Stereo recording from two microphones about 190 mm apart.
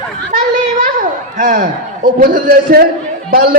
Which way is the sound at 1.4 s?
40° right (ahead or behind).